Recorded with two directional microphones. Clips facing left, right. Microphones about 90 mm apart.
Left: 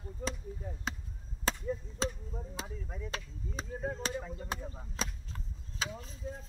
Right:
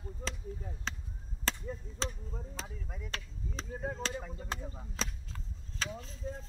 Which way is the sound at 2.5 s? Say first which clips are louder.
Left 2 dB; 15° left (ahead or behind).